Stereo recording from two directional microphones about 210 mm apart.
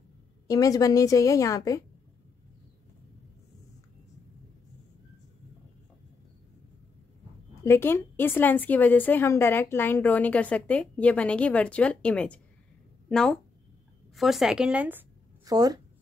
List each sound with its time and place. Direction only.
0.5 s a woman's voice: 15° left (ahead or behind)
7.6 s a woman's voice: 10° left (ahead or behind); by 15.8 s 20° right (ahead or behind)